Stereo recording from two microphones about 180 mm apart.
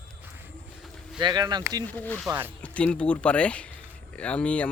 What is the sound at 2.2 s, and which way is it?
Speech, 10° right (ahead or behind).